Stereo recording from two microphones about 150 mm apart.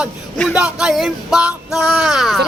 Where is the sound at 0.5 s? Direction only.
5° right (ahead or behind).